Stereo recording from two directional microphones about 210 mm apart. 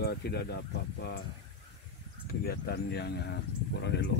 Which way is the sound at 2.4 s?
50° left (ahead or behind).